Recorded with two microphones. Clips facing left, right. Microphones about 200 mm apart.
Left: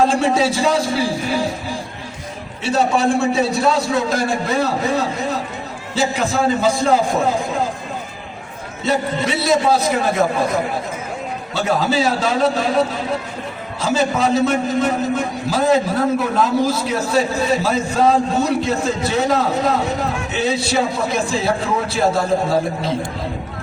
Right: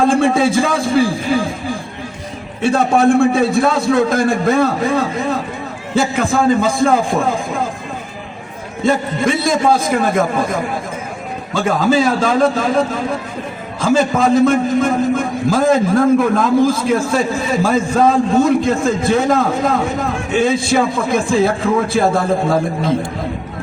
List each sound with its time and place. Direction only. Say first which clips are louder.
0.0 s a man's voice: right 3 dB; 50° right (ahead or behind)
2.6 s a man's voice: right 4 dB; 50° right (ahead or behind)
8.8 s a man's voice: right 4 dB; 50° right (ahead or behind)
11.5 s a man's voice: right 4 dB; 50° right (ahead or behind)